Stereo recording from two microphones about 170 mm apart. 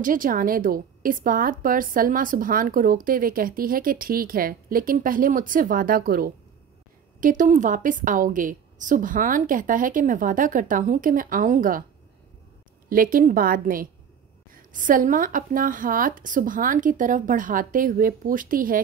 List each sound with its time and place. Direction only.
0.0 s a woman's voice: 55° right (ahead or behind)
12.9 s a woman's voice: 55° right (ahead or behind)